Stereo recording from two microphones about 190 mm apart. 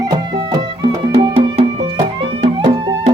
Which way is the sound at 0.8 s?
20° right (ahead or behind).